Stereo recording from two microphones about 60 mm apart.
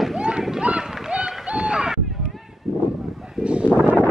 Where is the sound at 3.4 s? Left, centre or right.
Centre.